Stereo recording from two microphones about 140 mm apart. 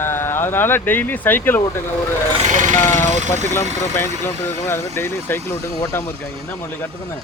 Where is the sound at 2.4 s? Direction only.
60° right (ahead or behind).